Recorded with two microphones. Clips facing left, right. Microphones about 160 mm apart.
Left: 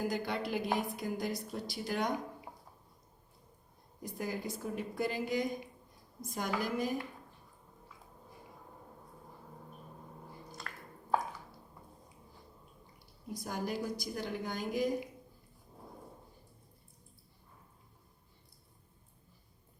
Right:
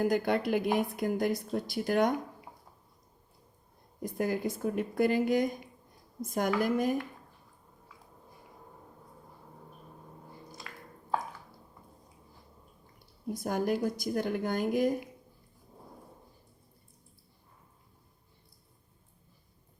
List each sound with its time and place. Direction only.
0.0 s a woman's voice: 55° right (ahead or behind)
4.0 s a woman's voice: 55° right (ahead or behind)
10.7 s drip: 5° right (ahead or behind)
13.4 s a woman's voice: 55° right (ahead or behind)